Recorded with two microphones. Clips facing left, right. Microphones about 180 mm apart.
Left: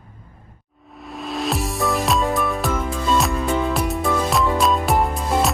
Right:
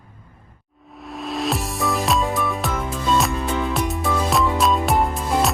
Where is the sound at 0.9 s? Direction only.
Centre (ahead or behind).